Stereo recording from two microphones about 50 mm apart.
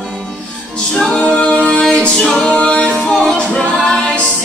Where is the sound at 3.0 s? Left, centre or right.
Centre.